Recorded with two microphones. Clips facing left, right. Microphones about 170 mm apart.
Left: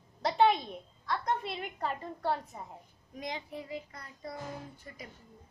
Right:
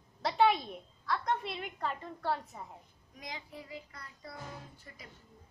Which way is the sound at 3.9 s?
45° left (ahead or behind).